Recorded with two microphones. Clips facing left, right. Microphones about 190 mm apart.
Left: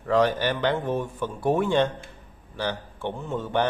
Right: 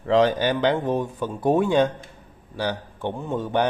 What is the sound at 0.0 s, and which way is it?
A man's voice, 20° right (ahead or behind).